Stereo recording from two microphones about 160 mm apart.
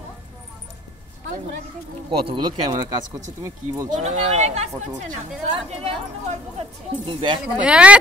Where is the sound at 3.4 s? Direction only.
20° right (ahead or behind).